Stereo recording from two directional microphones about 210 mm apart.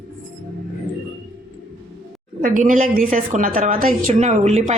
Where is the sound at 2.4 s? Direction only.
40° right (ahead or behind).